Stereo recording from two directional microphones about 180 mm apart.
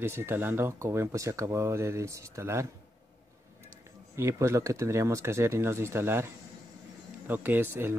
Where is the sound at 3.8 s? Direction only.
15° right (ahead or behind).